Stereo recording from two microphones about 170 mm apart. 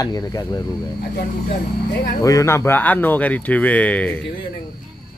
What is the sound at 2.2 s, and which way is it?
Speech, 20° left (ahead or behind).